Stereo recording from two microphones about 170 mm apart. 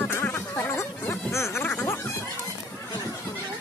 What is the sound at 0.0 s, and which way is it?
Snicker, 10° left (ahead or behind).